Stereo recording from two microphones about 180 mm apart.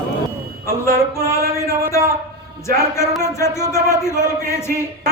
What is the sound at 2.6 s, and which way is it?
Speech, 15° left (ahead or behind).